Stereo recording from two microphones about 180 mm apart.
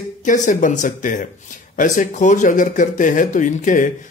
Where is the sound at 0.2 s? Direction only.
45° left (ahead or behind).